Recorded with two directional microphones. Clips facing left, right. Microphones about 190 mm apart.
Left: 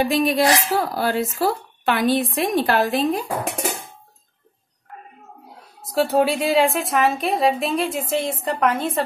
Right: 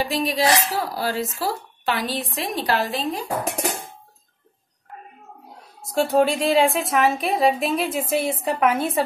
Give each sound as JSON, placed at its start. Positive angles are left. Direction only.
{"t": 0.0, "sound": "speech", "side_deg": 55}
{"t": 5.8, "sound": "a woman's voice", "side_deg": 0}